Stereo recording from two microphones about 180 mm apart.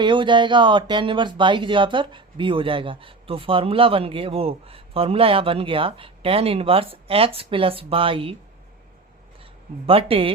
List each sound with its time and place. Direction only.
0.0 s speech: 25° right (ahead or behind)
9.4 s speech: 30° right (ahead or behind)